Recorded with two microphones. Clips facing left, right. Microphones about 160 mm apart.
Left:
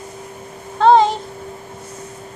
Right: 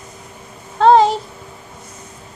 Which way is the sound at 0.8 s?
5° right (ahead or behind).